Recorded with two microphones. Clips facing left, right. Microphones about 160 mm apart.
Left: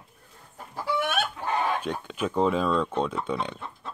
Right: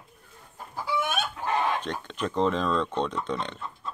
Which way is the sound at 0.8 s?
60° left (ahead or behind).